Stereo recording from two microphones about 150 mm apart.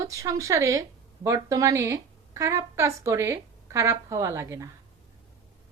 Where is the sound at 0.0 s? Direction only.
20° right (ahead or behind).